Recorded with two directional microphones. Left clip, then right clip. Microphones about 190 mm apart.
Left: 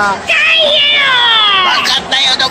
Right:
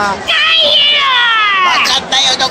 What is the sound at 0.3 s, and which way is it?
Music, 50° right (ahead or behind).